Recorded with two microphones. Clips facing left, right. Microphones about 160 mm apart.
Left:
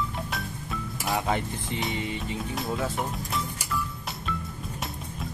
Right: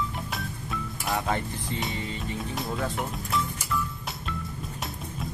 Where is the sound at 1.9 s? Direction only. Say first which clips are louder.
Left 2 dB; 20° left (ahead or behind).